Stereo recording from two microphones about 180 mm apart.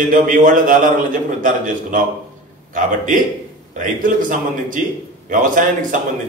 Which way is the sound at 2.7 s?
50° right (ahead or behind).